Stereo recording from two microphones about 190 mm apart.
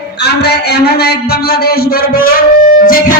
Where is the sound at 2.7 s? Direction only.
50° left (ahead or behind).